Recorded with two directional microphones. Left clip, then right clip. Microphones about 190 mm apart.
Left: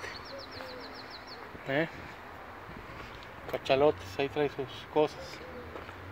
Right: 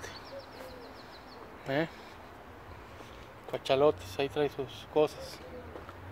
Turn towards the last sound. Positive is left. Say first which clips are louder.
# even
turn(degrees=-5)  # may be behind; listen again after turning